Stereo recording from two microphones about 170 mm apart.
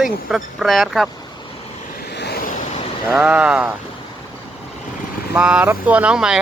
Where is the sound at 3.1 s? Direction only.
10° right (ahead or behind).